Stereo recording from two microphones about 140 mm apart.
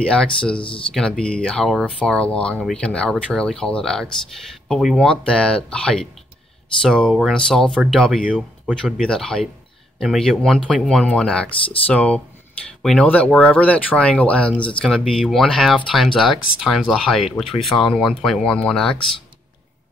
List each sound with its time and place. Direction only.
0.0 s speech: 5° left (ahead or behind)
0.6 s speech: 40° left (ahead or behind)
0.9 s speech: 5° left (ahead or behind)
9.0 s speech: 5° left (ahead or behind)